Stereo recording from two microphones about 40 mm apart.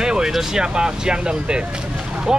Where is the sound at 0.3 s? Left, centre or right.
Centre.